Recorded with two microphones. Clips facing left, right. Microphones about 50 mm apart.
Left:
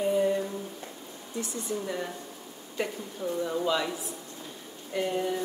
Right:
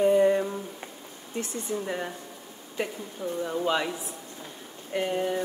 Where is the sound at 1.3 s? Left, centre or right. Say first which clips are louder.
Right 2 dB; right.